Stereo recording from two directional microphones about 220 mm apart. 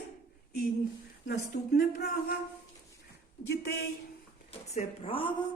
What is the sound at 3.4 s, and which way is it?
Speech, 45° left (ahead or behind).